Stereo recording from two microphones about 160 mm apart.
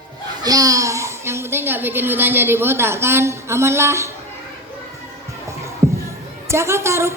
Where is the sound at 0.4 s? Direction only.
20° right (ahead or behind).